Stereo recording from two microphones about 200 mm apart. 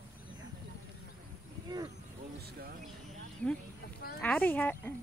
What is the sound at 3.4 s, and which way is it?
Speech, 5° left (ahead or behind).